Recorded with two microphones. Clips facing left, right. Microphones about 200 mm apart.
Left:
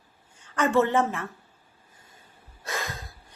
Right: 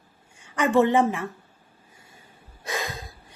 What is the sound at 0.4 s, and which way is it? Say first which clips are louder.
Speech: right 3 dB; 15° right (ahead or behind).